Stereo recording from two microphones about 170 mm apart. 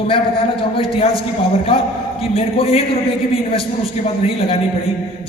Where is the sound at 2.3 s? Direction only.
35° left (ahead or behind).